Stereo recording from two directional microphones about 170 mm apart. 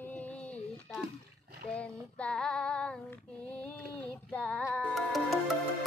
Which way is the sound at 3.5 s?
5° left (ahead or behind).